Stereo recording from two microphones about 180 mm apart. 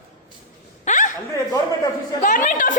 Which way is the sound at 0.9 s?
45° left (ahead or behind).